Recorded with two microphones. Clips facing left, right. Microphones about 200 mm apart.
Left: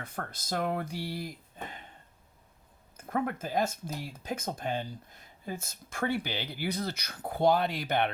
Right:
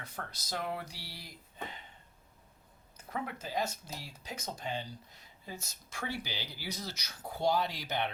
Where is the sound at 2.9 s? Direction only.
50° left (ahead or behind).